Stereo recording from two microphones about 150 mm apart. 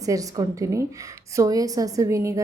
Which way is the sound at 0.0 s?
20° right (ahead or behind).